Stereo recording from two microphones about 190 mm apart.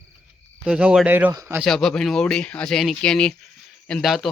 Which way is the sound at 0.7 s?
5° right (ahead or behind).